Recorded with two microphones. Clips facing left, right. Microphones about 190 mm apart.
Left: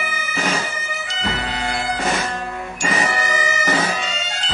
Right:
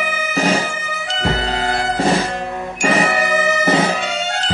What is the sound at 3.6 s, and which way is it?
Bagpipes, 30° right (ahead or behind).